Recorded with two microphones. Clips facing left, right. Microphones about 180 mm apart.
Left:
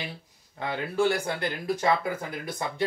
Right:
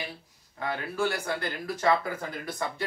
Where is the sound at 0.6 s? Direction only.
20° left (ahead or behind).